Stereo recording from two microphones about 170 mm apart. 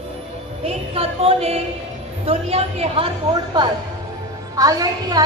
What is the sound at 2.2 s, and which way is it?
Speech, 35° right (ahead or behind).